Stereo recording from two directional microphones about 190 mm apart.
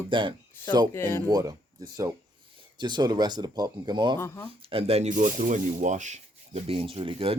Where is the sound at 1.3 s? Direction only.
20° right (ahead or behind).